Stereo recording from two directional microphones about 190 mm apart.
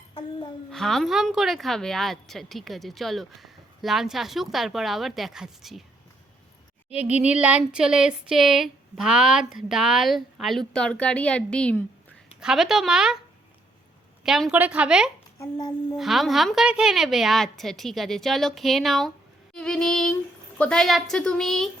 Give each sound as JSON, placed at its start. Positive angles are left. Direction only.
{"t": 0.1, "sound": "a sound", "side_deg": 25}
{"t": 0.7, "sound": "speech", "side_deg": 0}
{"t": 7.0, "sound": "speech", "side_deg": -5}
{"t": 14.3, "sound": "speech", "side_deg": 0}
{"t": 15.4, "sound": "child singing", "side_deg": 20}
{"t": 16.0, "sound": "speech", "side_deg": 0}